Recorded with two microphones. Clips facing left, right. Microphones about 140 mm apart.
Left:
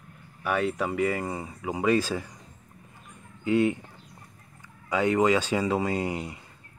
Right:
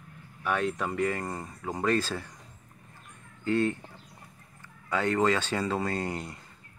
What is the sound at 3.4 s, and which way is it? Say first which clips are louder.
Speech: left 3 dB; 10° left (ahead or behind).